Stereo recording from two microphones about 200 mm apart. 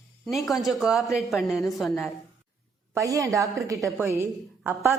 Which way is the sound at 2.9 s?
15° right (ahead or behind).